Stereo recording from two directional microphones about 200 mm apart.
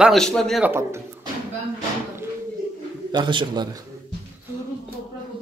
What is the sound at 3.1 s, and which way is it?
Speech, 25° right (ahead or behind).